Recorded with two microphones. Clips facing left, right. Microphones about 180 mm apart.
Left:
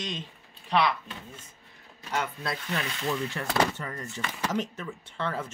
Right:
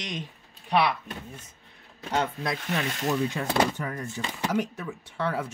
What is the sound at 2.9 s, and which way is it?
Speech, 40° right (ahead or behind).